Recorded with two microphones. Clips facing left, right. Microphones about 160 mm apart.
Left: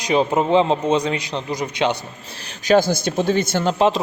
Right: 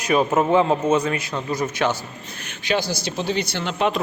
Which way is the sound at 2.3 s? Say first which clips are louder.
Left 8 dB; 35° left (ahead or behind).